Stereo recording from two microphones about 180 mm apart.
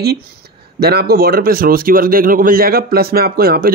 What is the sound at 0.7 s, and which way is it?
Speech, 60° right (ahead or behind).